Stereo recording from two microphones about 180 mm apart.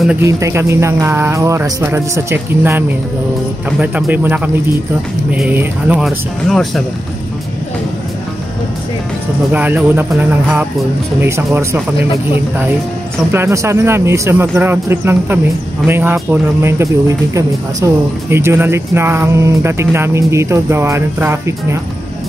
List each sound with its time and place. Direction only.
0.2 s speech: 15° right (ahead or behind)
3.8 s speech: 10° right (ahead or behind)
9.5 s speech: 10° right (ahead or behind)
11.1 s speech: 15° right (ahead or behind)
13.3 s speech: 15° right (ahead or behind)